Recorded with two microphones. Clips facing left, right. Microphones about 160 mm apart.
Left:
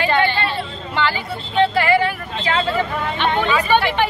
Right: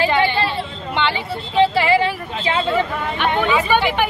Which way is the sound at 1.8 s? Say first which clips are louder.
Even; 25° right (ahead or behind).